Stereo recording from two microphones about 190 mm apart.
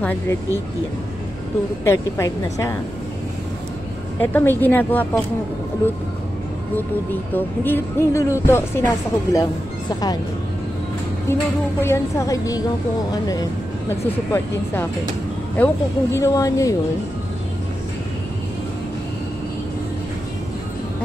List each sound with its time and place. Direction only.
0.0 s speech: 10° left (ahead or behind)
1.9 s speech: 15° left (ahead or behind)
4.2 s speech: 10° left (ahead or behind)
7.3 s speech: 10° left (ahead or behind)
11.8 s speech: 15° left (ahead or behind)